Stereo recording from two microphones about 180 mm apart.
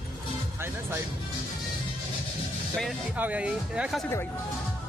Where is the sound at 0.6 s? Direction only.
15° right (ahead or behind).